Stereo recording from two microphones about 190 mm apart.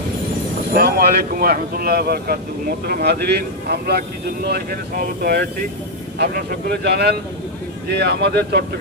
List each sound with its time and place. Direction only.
0.7 s speech: 55° right (ahead or behind)